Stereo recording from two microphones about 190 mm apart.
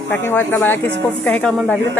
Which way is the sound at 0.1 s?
10° left (ahead or behind).